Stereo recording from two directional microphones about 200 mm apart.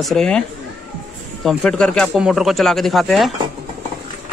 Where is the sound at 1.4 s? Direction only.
5° left (ahead or behind).